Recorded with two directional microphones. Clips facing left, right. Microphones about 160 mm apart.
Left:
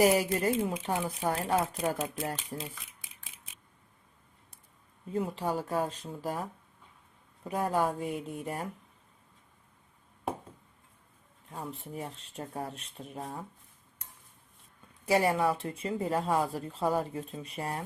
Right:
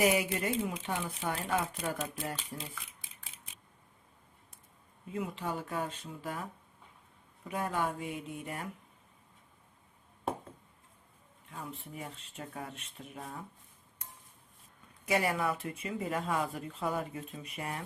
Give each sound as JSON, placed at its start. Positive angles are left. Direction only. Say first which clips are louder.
{"t": 0.0, "sound": "speech", "louder": "left 4 dB", "side_deg": 35}
{"t": 2.6, "sound": "speech", "louder": "left 3 dB", "side_deg": 20}
{"t": 5.1, "sound": "speech", "louder": "left 5 dB", "side_deg": 35}
{"t": 11.5, "sound": "speech", "louder": "left 4 dB", "side_deg": 35}
{"t": 15.0, "sound": "speech", "louder": "left 5 dB", "side_deg": 30}